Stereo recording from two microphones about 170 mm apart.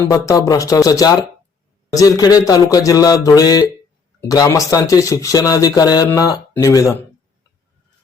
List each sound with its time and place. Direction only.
0.0 s speech: 20° left (ahead or behind)